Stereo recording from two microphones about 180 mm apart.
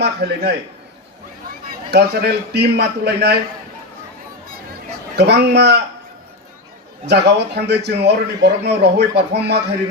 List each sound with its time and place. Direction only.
0.0 s a man's voice: 65° right (ahead or behind)
1.9 s a man's voice: 65° right (ahead or behind)
5.1 s a man's voice: 70° right (ahead or behind)
7.1 s a man's voice: 70° right (ahead or behind)